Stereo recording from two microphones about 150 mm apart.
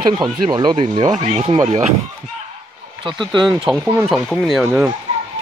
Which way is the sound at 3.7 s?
10° right (ahead or behind).